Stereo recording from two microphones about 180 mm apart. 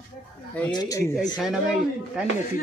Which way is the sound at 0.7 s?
20° left (ahead or behind).